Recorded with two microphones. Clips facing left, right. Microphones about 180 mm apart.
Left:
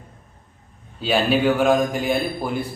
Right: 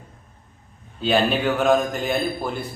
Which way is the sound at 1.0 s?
5° left (ahead or behind).